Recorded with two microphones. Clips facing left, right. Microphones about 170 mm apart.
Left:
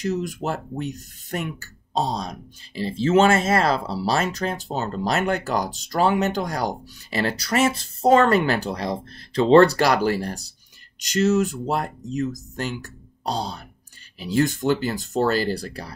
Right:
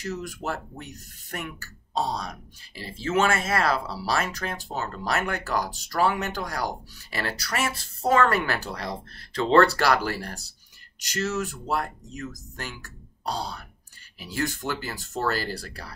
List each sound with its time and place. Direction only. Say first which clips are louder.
0.0 s speech: left 7 dB; 20° left (ahead or behind)